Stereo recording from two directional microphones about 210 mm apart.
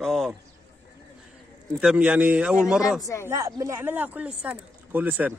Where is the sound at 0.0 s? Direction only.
Centre (ahead or behind).